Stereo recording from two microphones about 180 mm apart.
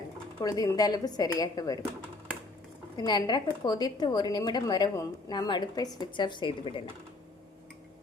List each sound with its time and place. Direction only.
0.4 s a woman's voice: 20° left (ahead or behind)
3.0 s a woman's voice: 25° left (ahead or behind)